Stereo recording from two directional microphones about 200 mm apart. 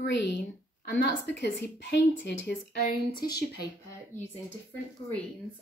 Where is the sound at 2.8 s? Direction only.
25° left (ahead or behind).